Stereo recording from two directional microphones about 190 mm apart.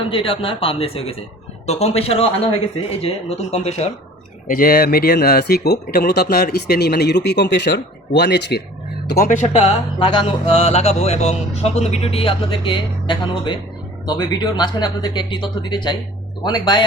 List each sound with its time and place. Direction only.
0.1 s speech: 30° left (ahead or behind)
4.4 s speech: 50° left (ahead or behind)
9.0 s speech: 50° left (ahead or behind)
10.0 s speech: 25° left (ahead or behind)